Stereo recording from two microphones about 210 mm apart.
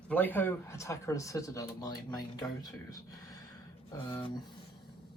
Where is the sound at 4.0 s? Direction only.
20° left (ahead or behind).